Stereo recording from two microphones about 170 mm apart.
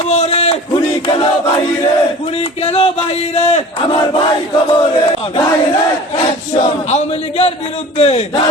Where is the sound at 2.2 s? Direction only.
35° left (ahead or behind).